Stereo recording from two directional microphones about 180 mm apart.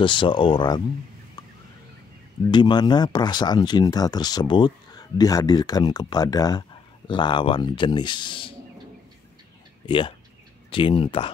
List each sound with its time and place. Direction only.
0.0 s speech: 25° left (ahead or behind)
2.4 s speech: 25° left (ahead or behind)
9.8 s speech: 30° left (ahead or behind)